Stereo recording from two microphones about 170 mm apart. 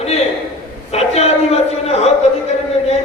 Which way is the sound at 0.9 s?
40° left (ahead or behind).